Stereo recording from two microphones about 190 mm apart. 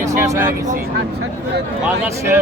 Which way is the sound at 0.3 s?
15° right (ahead or behind).